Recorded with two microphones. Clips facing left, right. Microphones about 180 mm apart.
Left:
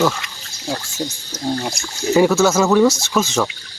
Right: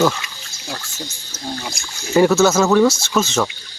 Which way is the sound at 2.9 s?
15° left (ahead or behind).